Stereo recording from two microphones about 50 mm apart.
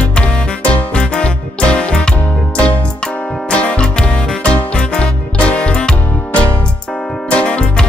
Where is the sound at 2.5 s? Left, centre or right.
Left.